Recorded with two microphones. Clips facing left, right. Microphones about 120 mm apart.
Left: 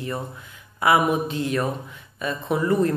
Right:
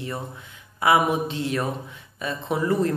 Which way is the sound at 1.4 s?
40° left (ahead or behind).